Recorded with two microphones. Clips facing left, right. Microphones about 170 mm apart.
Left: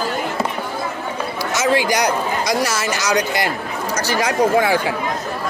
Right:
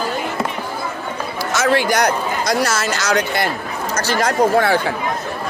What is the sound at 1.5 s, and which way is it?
A man's voice, 15° left (ahead or behind).